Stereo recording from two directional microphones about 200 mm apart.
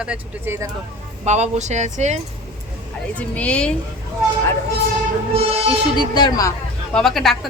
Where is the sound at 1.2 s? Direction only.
35° right (ahead or behind).